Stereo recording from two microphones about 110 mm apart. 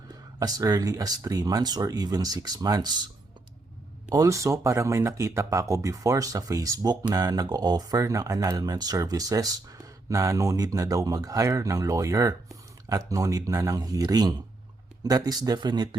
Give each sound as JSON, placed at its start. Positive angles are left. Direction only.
{"t": 0.3, "sound": "speech", "side_deg": -30}
{"t": 4.1, "sound": "speech", "side_deg": -30}